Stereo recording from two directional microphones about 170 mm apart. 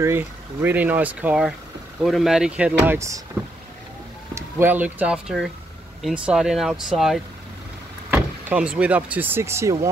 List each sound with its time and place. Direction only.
0.0 s speech: 15° right (ahead or behind)
2.9 s speech: 15° right (ahead or behind)
4.4 s speech: 10° right (ahead or behind)